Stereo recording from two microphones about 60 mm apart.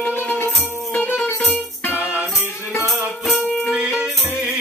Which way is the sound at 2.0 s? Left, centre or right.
Right.